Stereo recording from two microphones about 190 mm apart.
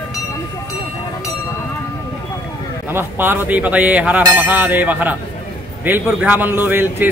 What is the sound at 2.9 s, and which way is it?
Speech, 10° right (ahead or behind).